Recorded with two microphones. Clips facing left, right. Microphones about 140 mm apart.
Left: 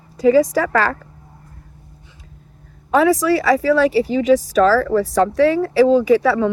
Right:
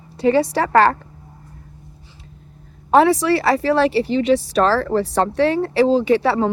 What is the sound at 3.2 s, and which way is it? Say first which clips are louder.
A woman's voice: left 2 dB; 70° right (ahead or behind).